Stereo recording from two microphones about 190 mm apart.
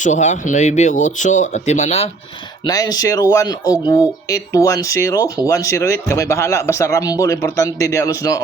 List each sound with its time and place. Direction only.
0.0 s speech: 40° left (ahead or behind)
2.6 s speech: 20° left (ahead or behind)